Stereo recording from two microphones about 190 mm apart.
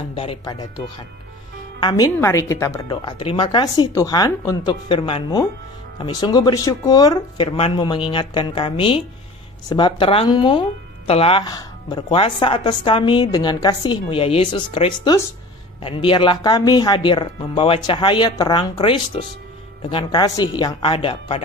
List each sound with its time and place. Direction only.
0.1 s speech: 30° left (ahead or behind)